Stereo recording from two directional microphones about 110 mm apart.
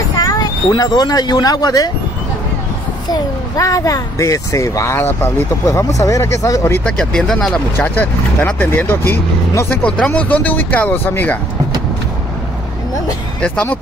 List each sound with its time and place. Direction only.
0.2 s speech: 35° left (ahead or behind)
3.1 s speech: 30° left (ahead or behind)
5.7 s speech: 30° left (ahead or behind)
6.8 s speech: 5° left (ahead or behind)
7.7 s speech: 15° left (ahead or behind)
13.4 s speech: 15° left (ahead or behind)